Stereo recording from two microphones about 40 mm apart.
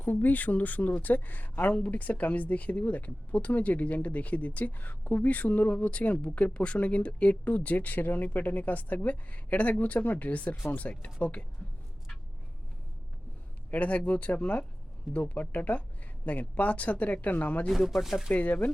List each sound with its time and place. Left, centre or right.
0.2 s speech: left
5.7 s speech: left
13.7 s speech: left
17.7 s speech: centre
18.3 s speech: left